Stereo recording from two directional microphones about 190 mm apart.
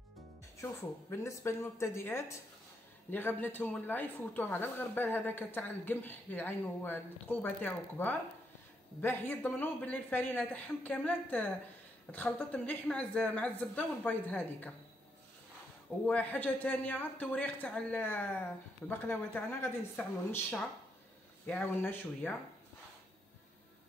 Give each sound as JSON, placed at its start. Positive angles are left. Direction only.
{"t": 1.1, "sound": "a woman's voice", "side_deg": 15}
{"t": 16.1, "sound": "a woman's voice", "side_deg": 10}